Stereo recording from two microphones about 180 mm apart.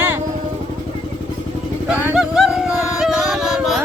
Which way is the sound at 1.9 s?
5° right (ahead or behind).